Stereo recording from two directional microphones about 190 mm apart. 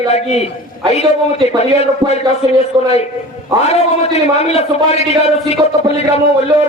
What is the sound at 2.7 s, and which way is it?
Speech, 20° right (ahead or behind).